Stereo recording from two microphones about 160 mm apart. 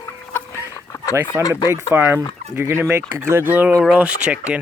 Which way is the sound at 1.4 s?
25° left (ahead or behind).